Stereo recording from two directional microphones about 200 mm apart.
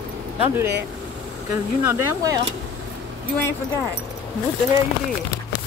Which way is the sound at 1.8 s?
15° right (ahead or behind).